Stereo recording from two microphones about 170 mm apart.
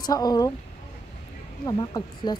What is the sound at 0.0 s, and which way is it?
Speech, 25° left (ahead or behind).